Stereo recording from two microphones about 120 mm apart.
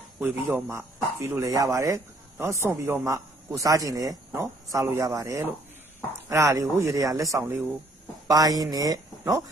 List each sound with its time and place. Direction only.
0.2 s speech: 10° right (ahead or behind)
0.7 s a man's voice: 20° right (ahead or behind)